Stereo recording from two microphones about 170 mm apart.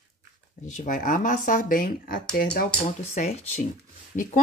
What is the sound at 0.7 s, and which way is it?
Speech, 50° left (ahead or behind).